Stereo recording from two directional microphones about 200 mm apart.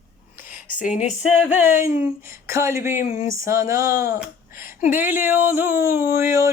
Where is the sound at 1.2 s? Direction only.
10° right (ahead or behind).